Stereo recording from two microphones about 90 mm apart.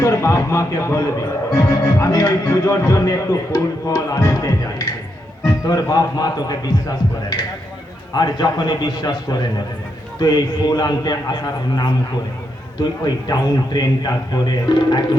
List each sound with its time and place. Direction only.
0.0 s a man's voice: 35° left (ahead or behind); by 11.3 s 50° left (ahead or behind)
12.8 s a man's voice: 50° left (ahead or behind)